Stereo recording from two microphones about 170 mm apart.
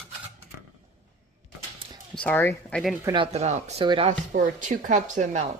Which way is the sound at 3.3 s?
40° right (ahead or behind).